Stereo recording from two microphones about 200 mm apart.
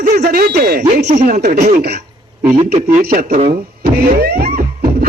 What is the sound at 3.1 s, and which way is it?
Speech, 45° right (ahead or behind).